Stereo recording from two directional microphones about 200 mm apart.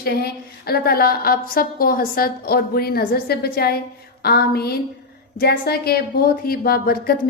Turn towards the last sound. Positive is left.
turn(degrees=50)  # may be behind; listen again after turning